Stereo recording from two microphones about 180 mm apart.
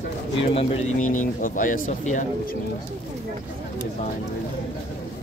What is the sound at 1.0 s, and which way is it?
Speech, 45° left (ahead or behind).